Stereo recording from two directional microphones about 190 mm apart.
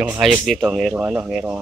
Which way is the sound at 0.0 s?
Centre (ahead or behind).